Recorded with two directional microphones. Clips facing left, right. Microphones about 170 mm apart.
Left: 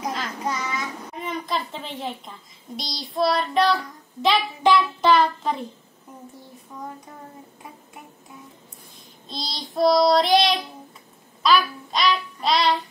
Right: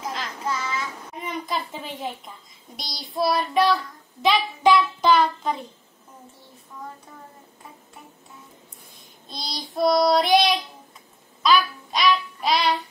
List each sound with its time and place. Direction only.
0.4 s child singing: 15° left (ahead or behind)
1.2 s a child's voice: centre (ahead or behind)
9.3 s child singing: centre (ahead or behind)